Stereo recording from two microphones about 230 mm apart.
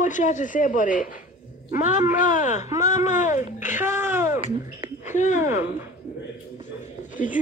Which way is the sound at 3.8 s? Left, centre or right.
Centre.